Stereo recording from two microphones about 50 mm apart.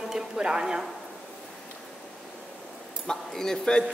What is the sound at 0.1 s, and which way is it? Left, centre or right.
Music, centre.